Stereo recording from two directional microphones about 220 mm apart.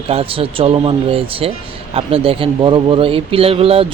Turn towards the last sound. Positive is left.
turn(degrees=-25)  # may be behind; listen again after turning